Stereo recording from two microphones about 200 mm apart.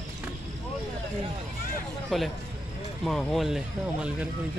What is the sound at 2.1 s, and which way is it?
Speech, centre (ahead or behind).